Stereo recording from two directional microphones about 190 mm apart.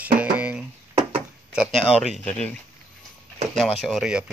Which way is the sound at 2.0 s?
Centre (ahead or behind).